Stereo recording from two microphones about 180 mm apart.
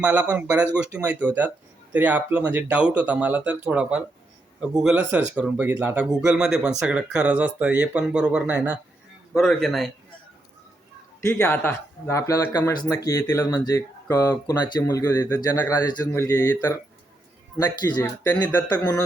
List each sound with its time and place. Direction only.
0.0 s a man's voice: 5° right (ahead or behind)
11.2 s speech: 15° left (ahead or behind)
17.9 s speech: 20° left (ahead or behind)